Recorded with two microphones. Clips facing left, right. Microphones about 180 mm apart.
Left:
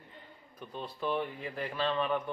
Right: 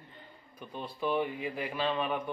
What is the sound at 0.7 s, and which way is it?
A man's voice, 5° right (ahead or behind).